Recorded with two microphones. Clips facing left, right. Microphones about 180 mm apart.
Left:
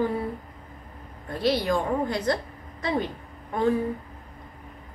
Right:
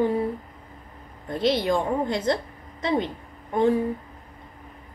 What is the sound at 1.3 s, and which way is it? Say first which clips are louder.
A woman's voice: right 2 dB; 20° right (ahead or behind).